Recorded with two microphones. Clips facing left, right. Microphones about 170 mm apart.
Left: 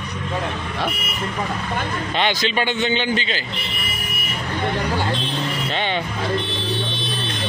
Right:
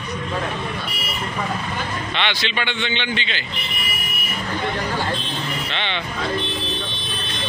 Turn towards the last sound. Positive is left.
turn(degrees=40)  # may be behind; listen again after turning